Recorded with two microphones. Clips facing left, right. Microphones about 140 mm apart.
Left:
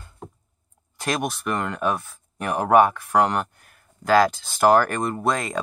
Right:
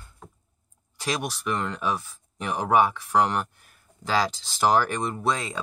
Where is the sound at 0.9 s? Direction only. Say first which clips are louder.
Left 4 dB; 55° left (ahead or behind).